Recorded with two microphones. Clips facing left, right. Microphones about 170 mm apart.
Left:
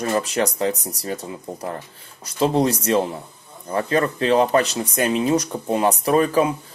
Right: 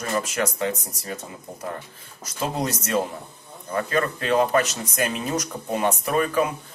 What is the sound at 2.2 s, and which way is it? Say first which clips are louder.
Speech: left 8 dB; 30° left (ahead or behind).